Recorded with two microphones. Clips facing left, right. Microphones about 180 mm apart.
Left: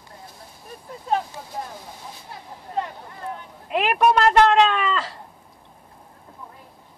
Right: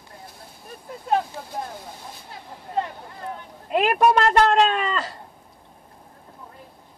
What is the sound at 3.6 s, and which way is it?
A man's voice, 40° right (ahead or behind).